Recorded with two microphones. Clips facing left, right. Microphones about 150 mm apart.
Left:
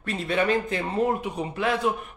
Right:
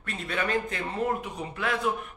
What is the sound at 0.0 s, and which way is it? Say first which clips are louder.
A man's voice: left 6 dB; 25° left (ahead or behind).